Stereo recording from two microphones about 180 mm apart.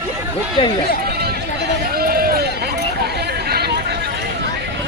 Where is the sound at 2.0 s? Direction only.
55° right (ahead or behind).